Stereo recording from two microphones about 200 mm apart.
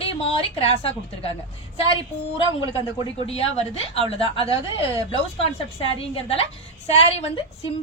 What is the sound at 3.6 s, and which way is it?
Speech, 30° left (ahead or behind).